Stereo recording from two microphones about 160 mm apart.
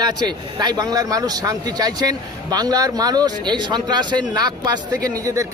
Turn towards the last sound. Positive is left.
turn(degrees=-25)  # may be behind; listen again after turning